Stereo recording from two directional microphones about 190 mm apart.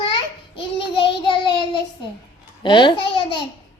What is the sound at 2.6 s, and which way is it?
Babbling, 25° left (ahead or behind).